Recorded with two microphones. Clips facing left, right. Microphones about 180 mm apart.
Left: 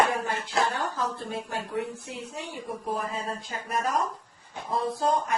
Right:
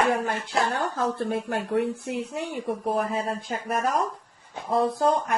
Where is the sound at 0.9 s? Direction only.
60° right (ahead or behind).